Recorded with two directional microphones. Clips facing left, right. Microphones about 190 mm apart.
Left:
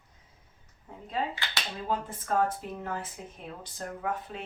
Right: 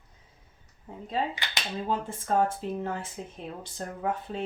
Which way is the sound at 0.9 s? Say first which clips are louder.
Right 4 dB; 30° right (ahead or behind).